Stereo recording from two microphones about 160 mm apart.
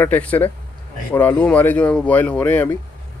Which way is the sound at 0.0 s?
10° left (ahead or behind).